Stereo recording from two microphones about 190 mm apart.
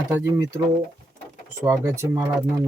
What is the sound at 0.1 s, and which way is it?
Speech, 10° right (ahead or behind).